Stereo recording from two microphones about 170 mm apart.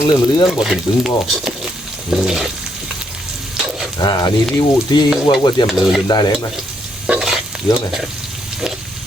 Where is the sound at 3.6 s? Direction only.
5° right (ahead or behind).